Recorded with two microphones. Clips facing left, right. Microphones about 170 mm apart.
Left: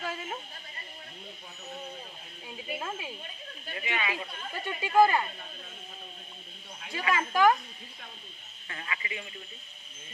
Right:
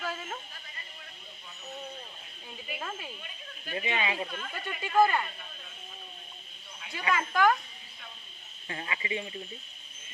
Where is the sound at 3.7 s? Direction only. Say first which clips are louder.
Right 2 dB; 25° right (ahead or behind).